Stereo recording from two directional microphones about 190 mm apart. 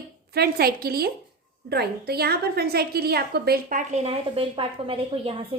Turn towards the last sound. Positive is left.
turn(degrees=-30)  # may be behind; listen again after turning